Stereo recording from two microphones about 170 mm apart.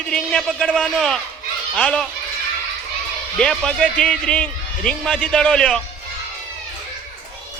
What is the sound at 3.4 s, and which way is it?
A man's voice, 5° left (ahead or behind).